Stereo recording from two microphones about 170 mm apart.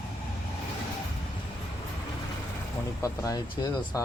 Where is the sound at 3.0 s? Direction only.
20° left (ahead or behind).